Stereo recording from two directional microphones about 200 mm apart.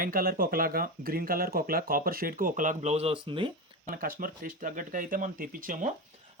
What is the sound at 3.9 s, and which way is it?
Speech, 45° right (ahead or behind).